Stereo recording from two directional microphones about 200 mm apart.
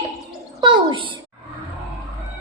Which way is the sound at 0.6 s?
20° right (ahead or behind).